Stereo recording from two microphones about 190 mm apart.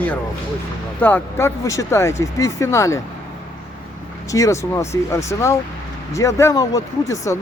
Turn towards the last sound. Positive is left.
turn(degrees=15)  # may be behind; listen again after turning